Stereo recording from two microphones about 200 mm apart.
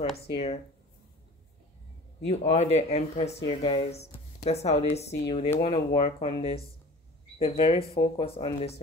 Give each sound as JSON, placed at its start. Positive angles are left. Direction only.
{"t": 0.1, "sound": "speech", "side_deg": 30}
{"t": 2.5, "sound": "speech", "side_deg": 30}